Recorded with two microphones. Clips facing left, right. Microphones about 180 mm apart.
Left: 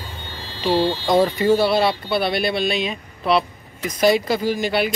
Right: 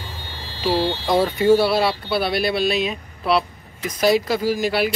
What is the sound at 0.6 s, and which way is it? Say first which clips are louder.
A man's voice: left 2 dB; 5° right (ahead or behind).